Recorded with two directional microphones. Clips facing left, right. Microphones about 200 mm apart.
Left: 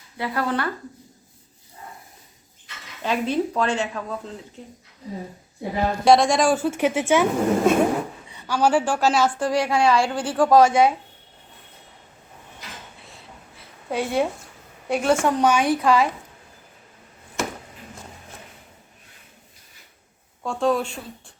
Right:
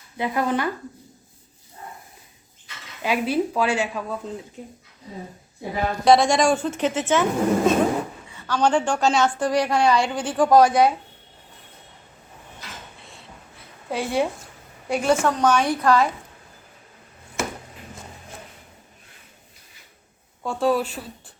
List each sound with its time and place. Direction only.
0.2 s speech: 20° right (ahead or behind)
3.0 s speech: 10° right (ahead or behind)
6.1 s a woman's voice: centre (ahead or behind)
13.0 s dishes: centre (ahead or behind)
13.9 s a woman's voice: centre (ahead or behind)
15.2 s a woman's voice: 15° left (ahead or behind)
15.6 s a woman's voice: 5° left (ahead or behind)
20.4 s a woman's voice: 5° right (ahead or behind)